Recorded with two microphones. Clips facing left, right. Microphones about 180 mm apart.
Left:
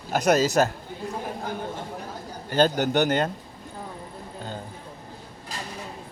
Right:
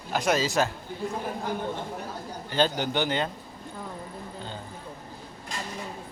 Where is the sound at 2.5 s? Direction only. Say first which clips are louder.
Left 5 dB; 45° left (ahead or behind).